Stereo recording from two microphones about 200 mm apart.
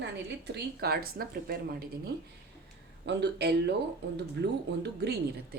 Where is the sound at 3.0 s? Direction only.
60° right (ahead or behind).